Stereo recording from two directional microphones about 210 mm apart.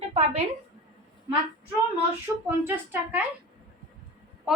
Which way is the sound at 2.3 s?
5° right (ahead or behind).